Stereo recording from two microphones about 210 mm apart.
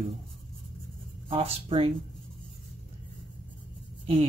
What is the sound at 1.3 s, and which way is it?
Speech, 25° right (ahead or behind).